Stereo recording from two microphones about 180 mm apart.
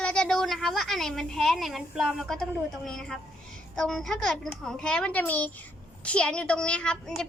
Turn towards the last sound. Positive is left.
turn(degrees=5)  # may be behind; listen again after turning